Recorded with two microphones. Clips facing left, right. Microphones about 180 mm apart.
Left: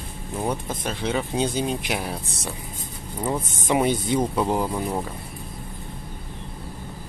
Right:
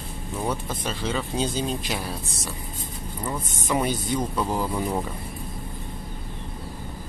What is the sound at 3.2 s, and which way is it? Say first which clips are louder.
Speech: left 5 dB; 20° left (ahead or behind).